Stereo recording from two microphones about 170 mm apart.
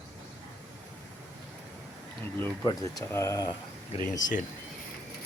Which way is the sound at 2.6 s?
20° left (ahead or behind).